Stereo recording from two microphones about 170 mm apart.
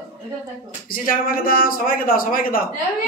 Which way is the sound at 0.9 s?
55° left (ahead or behind).